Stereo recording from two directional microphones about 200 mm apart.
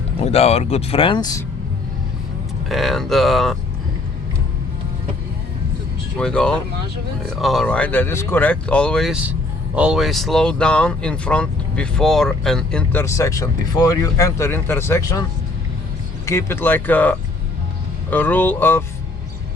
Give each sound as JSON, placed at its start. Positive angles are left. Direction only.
{"t": 0.2, "sound": "speech", "side_deg": 30}
{"t": 2.6, "sound": "speech", "side_deg": 0}
{"t": 6.1, "sound": "speech", "side_deg": 5}
{"t": 16.2, "sound": "speech", "side_deg": 15}